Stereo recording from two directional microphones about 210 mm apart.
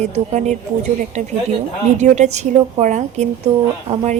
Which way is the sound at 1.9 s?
35° right (ahead or behind).